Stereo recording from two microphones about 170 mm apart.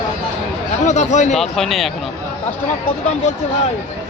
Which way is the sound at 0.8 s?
45° left (ahead or behind).